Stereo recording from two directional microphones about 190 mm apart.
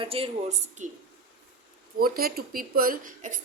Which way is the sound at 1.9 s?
50° right (ahead or behind).